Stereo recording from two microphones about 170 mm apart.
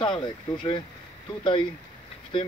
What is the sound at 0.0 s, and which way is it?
Speech, 30° left (ahead or behind).